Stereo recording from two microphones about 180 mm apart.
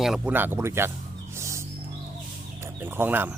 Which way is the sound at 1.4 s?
15° right (ahead or behind).